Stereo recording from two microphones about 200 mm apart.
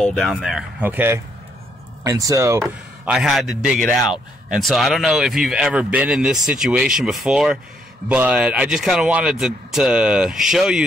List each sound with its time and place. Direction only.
0.0 s speech: centre (ahead or behind); by 2.6 s 15° right (ahead or behind)
2.6 s speech: centre (ahead or behind)